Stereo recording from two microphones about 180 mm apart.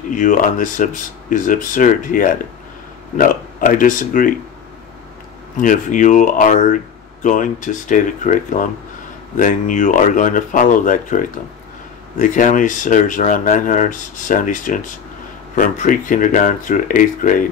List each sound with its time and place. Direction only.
0.1 s speech: 45° left (ahead or behind)
5.6 s speech: 45° left (ahead or behind)